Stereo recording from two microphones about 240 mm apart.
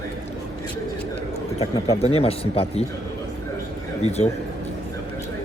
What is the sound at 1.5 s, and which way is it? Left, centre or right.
A man's voice, left.